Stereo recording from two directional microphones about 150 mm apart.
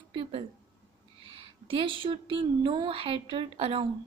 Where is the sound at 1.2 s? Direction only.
35° right (ahead or behind).